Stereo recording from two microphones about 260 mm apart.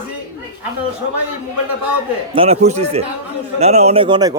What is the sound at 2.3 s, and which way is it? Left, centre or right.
A man's voice, right.